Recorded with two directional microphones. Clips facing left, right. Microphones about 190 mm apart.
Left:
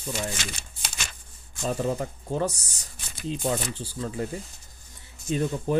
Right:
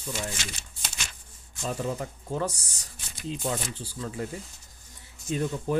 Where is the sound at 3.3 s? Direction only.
30° left (ahead or behind).